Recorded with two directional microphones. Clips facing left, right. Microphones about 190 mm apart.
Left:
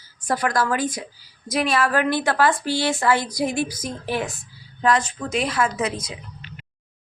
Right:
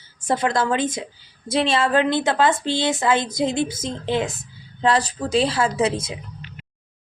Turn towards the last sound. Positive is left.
turn(degrees=-25)  # may be behind; listen again after turning